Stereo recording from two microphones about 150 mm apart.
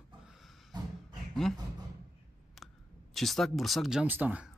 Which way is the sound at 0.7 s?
30° right (ahead or behind).